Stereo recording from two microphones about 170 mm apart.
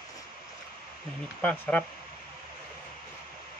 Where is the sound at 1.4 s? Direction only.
10° left (ahead or behind).